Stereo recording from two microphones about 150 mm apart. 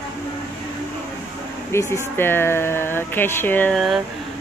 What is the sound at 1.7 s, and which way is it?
Speech, 20° left (ahead or behind).